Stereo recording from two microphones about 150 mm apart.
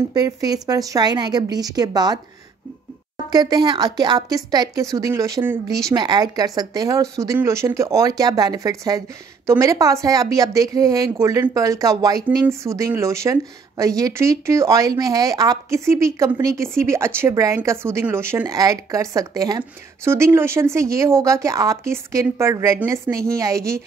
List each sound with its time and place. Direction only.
0.1 s speech: 25° right (ahead or behind)
3.3 s speech: 25° right (ahead or behind)